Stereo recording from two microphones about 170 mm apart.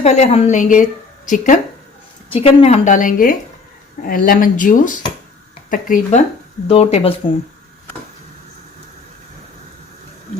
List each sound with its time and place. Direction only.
0.0 s a woman's voice: 40° left (ahead or behind)
2.4 s a woman's voice: 35° left (ahead or behind)
6.7 s speech: 35° left (ahead or behind)